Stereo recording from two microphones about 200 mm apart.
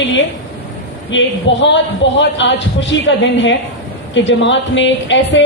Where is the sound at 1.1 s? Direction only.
65° left (ahead or behind).